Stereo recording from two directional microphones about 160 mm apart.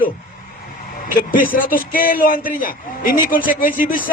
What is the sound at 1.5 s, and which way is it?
A man's voice, 60° left (ahead or behind).